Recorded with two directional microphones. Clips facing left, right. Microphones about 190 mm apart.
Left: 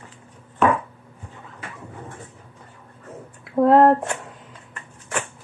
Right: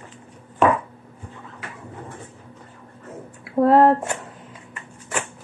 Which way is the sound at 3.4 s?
Centre (ahead or behind).